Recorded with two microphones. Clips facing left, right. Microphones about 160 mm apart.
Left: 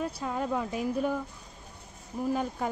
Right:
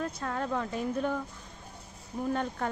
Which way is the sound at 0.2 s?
10° left (ahead or behind).